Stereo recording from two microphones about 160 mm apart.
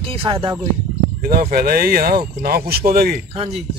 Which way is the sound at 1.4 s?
65° right (ahead or behind).